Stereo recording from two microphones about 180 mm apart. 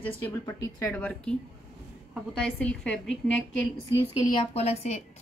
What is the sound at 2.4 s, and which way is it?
A woman's voice, 5° left (ahead or behind).